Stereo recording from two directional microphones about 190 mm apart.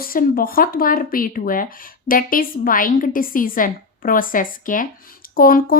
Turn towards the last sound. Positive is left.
turn(degrees=50)  # may be behind; listen again after turning